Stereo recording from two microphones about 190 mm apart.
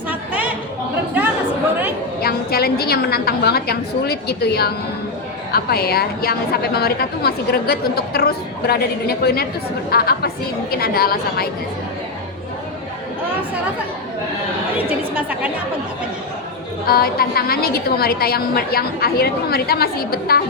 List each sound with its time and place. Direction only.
0.1 s chatter: 10° right (ahead or behind)
2.2 s a woman's voice: 55° left (ahead or behind)
14.8 s a woman's voice: 10° right (ahead or behind)
16.8 s a woman's voice: 50° left (ahead or behind)